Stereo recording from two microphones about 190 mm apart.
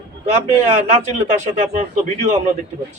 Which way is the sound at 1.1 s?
40° right (ahead or behind).